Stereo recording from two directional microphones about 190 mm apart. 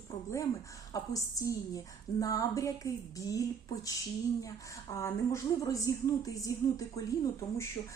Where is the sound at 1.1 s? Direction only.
15° left (ahead or behind).